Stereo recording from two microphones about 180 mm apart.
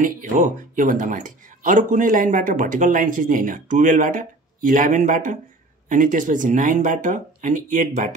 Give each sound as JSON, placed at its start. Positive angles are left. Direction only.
{"t": 0.0, "sound": "speech", "side_deg": -45}